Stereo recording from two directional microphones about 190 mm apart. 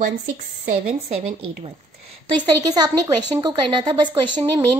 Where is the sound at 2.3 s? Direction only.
20° right (ahead or behind).